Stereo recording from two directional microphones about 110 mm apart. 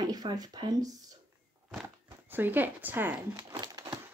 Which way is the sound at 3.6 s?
40° right (ahead or behind).